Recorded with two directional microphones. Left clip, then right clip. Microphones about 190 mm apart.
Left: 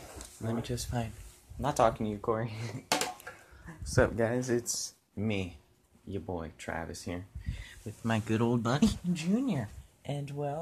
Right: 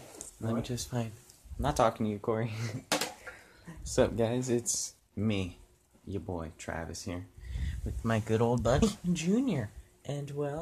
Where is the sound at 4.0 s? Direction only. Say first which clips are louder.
Even; 5° right (ahead or behind).